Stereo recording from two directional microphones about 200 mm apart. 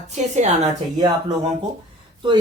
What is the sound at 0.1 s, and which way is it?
Speech, 35° right (ahead or behind).